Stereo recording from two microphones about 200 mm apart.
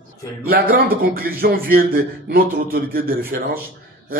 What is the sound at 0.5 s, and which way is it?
Speech, 45° right (ahead or behind).